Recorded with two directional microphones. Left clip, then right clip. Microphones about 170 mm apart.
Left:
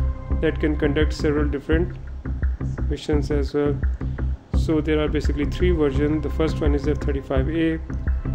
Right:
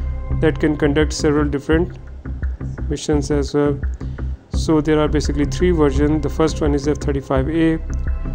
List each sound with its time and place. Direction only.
0.4 s speech: 40° right (ahead or behind)
2.9 s speech: 40° right (ahead or behind)